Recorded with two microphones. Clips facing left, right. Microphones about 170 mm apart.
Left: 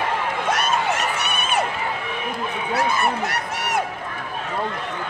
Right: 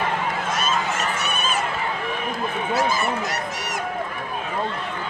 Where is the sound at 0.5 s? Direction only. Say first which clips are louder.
Left 5 dB; 65° left (ahead or behind).